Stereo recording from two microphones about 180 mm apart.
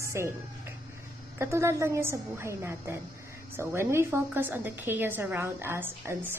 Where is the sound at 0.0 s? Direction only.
15° right (ahead or behind).